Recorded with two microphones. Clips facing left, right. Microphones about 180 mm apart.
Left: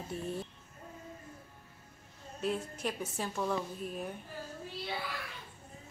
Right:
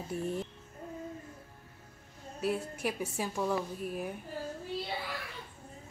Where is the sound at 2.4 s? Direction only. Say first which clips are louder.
Right 2 dB; 10° right (ahead or behind).